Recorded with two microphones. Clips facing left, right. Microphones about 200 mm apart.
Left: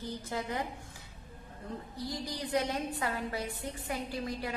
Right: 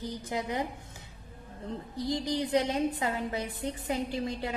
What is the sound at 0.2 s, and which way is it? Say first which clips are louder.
Speech: right 4 dB; 20° right (ahead or behind).